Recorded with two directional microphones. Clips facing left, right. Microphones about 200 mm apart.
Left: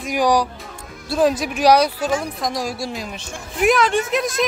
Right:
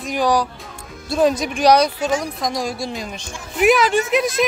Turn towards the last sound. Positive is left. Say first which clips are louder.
# right 2 dB
turn(degrees=0)  # may be behind; listen again after turning